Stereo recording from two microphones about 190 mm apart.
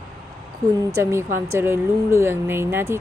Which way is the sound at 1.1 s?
15° right (ahead or behind).